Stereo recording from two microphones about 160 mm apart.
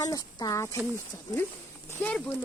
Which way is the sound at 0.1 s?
25° left (ahead or behind).